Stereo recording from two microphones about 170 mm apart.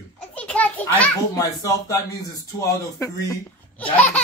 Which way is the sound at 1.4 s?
20° left (ahead or behind).